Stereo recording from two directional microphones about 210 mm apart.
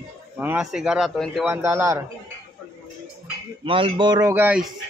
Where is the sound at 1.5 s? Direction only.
10° right (ahead or behind).